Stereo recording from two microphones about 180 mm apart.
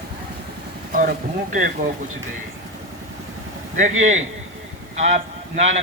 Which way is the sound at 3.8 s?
45° right (ahead or behind).